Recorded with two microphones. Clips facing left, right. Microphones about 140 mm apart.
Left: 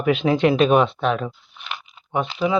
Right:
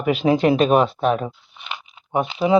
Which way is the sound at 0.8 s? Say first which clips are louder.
Right 1 dB; 40° right (ahead or behind).